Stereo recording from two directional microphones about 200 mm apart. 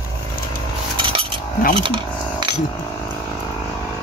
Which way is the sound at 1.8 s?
25° right (ahead or behind).